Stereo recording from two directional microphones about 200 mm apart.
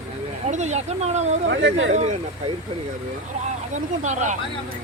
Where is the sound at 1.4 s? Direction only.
65° right (ahead or behind).